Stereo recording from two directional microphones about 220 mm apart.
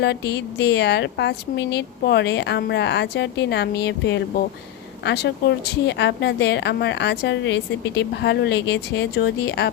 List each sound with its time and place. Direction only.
0.0 s a woman's voice: 50° left (ahead or behind)